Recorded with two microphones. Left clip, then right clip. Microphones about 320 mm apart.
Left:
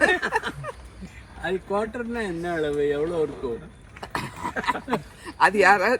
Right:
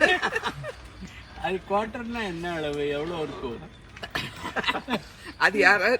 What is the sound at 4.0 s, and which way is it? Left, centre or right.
Throat clearing, centre.